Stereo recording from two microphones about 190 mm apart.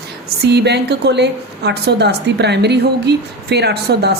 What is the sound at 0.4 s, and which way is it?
A woman's voice, 60° right (ahead or behind).